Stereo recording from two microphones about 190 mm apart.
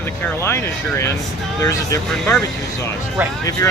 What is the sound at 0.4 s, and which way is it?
Speech, 15° left (ahead or behind).